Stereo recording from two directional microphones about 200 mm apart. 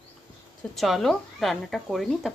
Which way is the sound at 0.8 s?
Centre (ahead or behind).